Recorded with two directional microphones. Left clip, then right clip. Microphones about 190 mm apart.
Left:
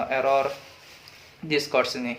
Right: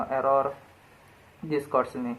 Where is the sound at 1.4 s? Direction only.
35° left (ahead or behind).